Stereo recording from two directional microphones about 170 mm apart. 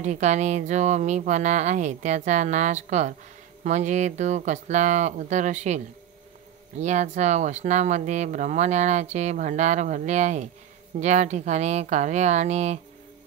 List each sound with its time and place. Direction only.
0.0 s speech: 45° right (ahead or behind)
6.8 s speech: 45° right (ahead or behind)